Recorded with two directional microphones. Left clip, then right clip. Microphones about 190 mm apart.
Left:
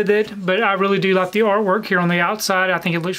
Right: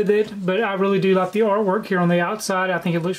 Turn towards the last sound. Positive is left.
turn(degrees=15)  # may be behind; listen again after turning